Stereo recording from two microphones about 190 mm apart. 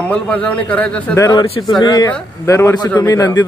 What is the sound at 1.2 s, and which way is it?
A man's voice, 25° left (ahead or behind).